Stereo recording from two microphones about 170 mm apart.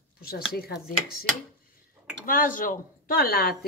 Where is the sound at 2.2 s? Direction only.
55° left (ahead or behind).